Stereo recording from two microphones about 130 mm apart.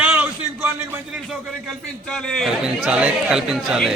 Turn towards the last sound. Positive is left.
turn(degrees=0)  # may be behind; listen again after turning